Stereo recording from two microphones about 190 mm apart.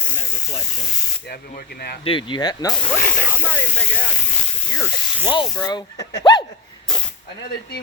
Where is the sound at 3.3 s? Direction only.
10° left (ahead or behind).